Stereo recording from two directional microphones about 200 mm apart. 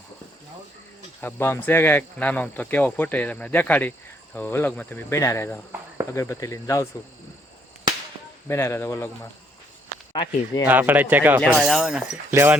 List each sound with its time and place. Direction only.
1.2 s speech: 10° left (ahead or behind)
8.4 s speech: 15° left (ahead or behind)
10.7 s speech: 10° right (ahead or behind)
12.3 s speech: 10° right (ahead or behind)